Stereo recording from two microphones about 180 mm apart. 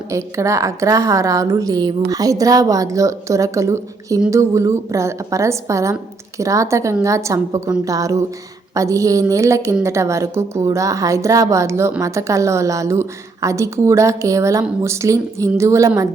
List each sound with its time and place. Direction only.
0.1 s a woman's voice: 15° right (ahead or behind)